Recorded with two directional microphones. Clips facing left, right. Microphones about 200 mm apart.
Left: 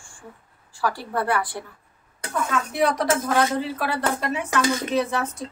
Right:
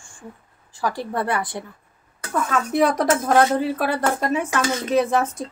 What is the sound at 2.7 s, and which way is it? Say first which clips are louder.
Speech: right 4 dB; 45° right (ahead or behind).